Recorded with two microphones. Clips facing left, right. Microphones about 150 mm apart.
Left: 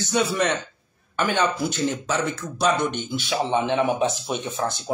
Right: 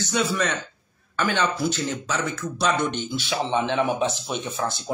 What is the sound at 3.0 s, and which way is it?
Speech, 10° left (ahead or behind).